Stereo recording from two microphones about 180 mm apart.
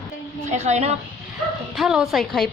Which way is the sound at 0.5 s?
40° right (ahead or behind).